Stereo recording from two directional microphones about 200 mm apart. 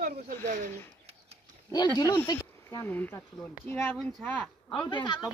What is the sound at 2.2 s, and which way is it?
A man's voice, 15° left (ahead or behind).